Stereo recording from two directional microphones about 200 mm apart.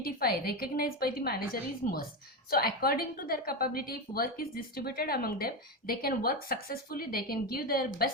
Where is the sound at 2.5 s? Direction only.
50° left (ahead or behind).